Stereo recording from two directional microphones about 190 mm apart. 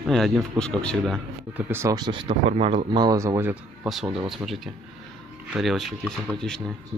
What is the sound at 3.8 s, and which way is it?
Speech, centre (ahead or behind).